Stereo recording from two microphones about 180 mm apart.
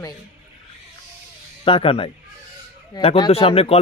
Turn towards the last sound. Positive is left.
turn(degrees=30)  # may be behind; listen again after turning